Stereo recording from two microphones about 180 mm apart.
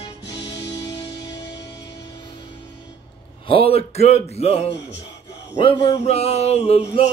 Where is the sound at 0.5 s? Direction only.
25° left (ahead or behind).